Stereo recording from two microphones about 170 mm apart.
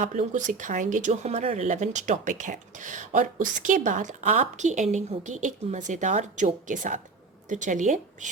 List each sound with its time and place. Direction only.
0.0 s speech: 45° right (ahead or behind)